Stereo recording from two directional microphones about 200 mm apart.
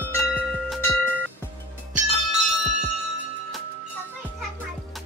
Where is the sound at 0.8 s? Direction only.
10° left (ahead or behind).